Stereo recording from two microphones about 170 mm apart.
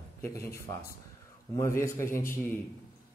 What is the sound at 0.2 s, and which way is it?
Speech, 15° left (ahead or behind).